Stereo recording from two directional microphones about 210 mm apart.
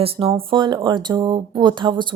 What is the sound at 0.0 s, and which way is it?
Speech, 25° right (ahead or behind).